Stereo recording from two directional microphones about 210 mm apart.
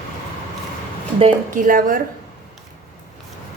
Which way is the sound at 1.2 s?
30° right (ahead or behind).